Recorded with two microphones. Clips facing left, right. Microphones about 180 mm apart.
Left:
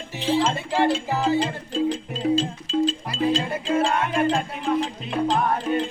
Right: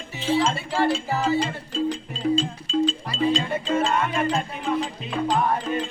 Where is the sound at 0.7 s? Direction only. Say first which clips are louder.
Left 3 dB; 15° left (ahead or behind).